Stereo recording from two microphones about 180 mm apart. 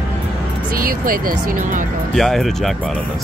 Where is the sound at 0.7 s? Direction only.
50° right (ahead or behind).